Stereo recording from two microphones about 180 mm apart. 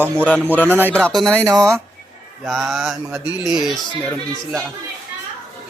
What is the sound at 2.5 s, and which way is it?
Speech, centre (ahead or behind).